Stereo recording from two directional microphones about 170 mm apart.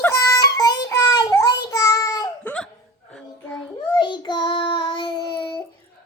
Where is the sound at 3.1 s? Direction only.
5° left (ahead or behind).